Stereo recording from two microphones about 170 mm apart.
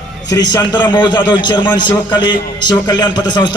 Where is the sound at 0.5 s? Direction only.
25° left (ahead or behind).